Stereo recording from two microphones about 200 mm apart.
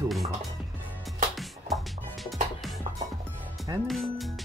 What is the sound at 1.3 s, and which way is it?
Music, centre (ahead or behind).